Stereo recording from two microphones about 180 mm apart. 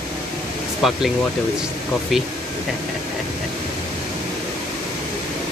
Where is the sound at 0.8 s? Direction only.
Centre (ahead or behind).